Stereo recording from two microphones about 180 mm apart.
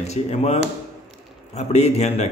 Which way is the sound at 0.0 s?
35° left (ahead or behind).